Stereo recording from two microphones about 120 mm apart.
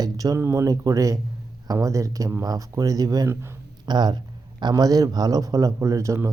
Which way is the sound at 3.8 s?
35° right (ahead or behind).